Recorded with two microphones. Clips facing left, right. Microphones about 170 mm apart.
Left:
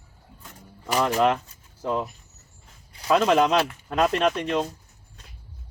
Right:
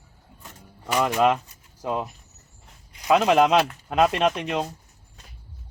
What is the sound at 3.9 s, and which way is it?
Speech, 5° right (ahead or behind).